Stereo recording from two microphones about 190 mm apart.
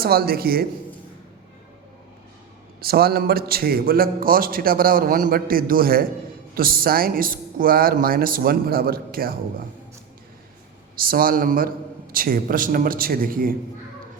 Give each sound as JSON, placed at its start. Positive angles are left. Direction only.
{"t": 0.0, "sound": "a man's voice", "side_deg": -55}
{"t": 2.8, "sound": "a man's voice", "side_deg": -55}
{"t": 11.0, "sound": "a man's voice", "side_deg": -50}